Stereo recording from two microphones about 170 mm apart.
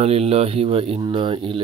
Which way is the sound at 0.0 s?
35° right (ahead or behind).